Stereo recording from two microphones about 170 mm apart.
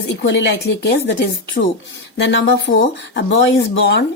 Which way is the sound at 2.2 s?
90° left.